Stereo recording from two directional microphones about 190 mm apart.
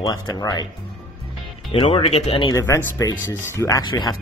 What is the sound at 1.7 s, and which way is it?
Speech, 30° left (ahead or behind).